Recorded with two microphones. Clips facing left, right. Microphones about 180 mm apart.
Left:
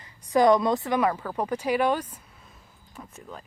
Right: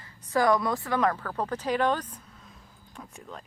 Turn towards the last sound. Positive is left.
turn(degrees=0)  # may be behind; listen again after turning